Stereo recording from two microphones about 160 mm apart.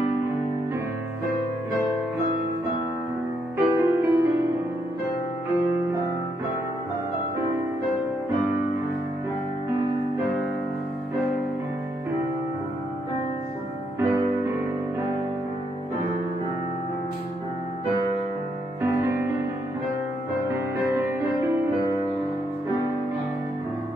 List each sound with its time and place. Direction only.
3.5 s music: 20° right (ahead or behind)
13.9 s music: 15° right (ahead or behind)
18.8 s music: 15° right (ahead or behind)